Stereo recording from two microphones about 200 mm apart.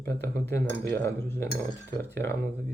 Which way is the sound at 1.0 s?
10° left (ahead or behind).